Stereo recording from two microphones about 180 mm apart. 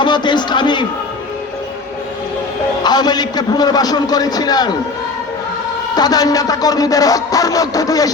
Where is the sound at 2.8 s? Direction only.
25° left (ahead or behind).